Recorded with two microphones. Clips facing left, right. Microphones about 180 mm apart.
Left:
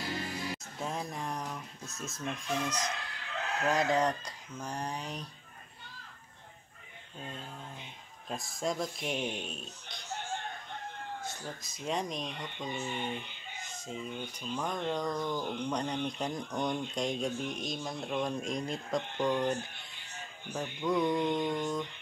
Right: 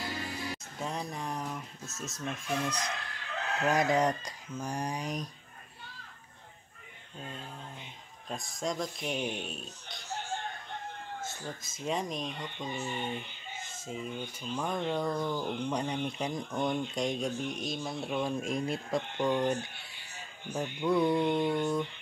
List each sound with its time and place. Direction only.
0.0 s music: centre (ahead or behind)
3.4 s chicken: centre (ahead or behind)
3.7 s speech: 15° right (ahead or behind)
8.3 s speech: centre (ahead or behind)
20.6 s speech: 10° right (ahead or behind)